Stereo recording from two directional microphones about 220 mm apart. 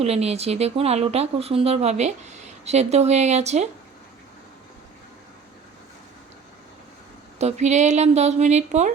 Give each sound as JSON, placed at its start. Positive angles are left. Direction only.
{"t": 0.0, "sound": "speech", "side_deg": -30}
{"t": 7.3, "sound": "a woman's voice", "side_deg": -30}